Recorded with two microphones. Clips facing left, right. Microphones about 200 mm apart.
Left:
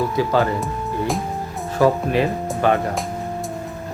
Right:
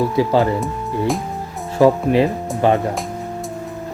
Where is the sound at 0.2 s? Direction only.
25° right (ahead or behind).